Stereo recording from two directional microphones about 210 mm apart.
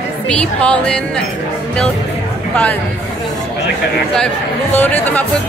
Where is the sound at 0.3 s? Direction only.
5° left (ahead or behind).